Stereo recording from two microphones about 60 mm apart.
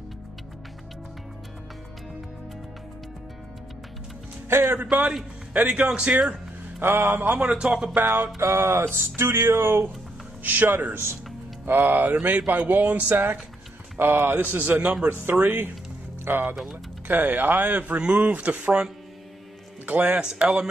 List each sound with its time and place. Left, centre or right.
4.5 s a man's voice: right
4.7 s speech: right
6.8 s music: right
7.3 s a man's voice: centre
8.4 s music: right
10.4 s speech: right
14.8 s speech: centre
15.3 s speech: right; by 18.9 s centre
19.9 s a man's voice: right